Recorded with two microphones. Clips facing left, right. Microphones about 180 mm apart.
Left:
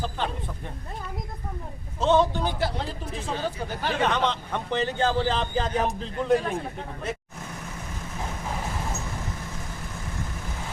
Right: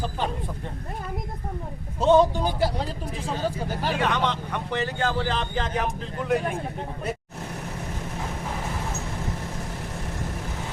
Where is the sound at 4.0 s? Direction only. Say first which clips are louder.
Left 2 dB; 20° left (ahead or behind).